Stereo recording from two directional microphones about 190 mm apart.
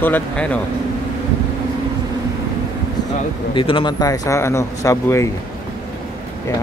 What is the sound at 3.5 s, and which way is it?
A man's voice, 25° left (ahead or behind).